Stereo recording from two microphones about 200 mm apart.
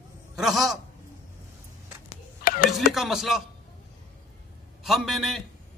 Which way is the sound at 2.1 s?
45° left (ahead or behind).